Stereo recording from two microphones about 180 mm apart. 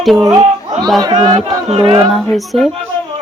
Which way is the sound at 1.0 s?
25° right (ahead or behind).